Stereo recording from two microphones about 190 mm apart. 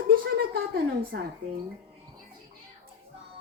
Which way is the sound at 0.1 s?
55° right (ahead or behind).